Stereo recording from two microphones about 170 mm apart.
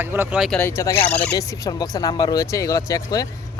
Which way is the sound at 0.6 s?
15° left (ahead or behind).